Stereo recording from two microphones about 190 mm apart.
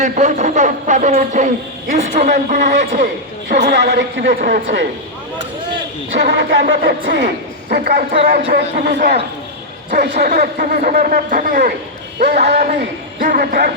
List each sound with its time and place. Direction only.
0.0 s speech: 40° right (ahead or behind)
3.5 s a sound: 60° right (ahead or behind)
6.1 s a sound: 60° right (ahead or behind)
8.4 s speech: 30° right (ahead or behind)
8.8 s a man's voice: 50° right (ahead or behind)
12.2 s speech: 35° right (ahead or behind)
13.1 s a man's voice: 50° right (ahead or behind)